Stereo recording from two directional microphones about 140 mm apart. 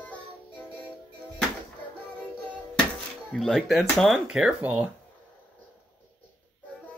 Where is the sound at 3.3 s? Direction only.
Centre (ahead or behind).